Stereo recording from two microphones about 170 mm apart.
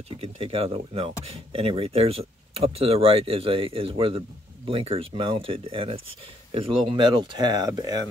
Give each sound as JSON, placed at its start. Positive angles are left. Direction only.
{"t": 0.2, "sound": "speech", "side_deg": -35}